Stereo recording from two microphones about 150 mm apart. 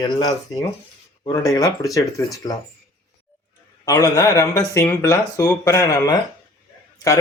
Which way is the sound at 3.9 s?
20° left (ahead or behind).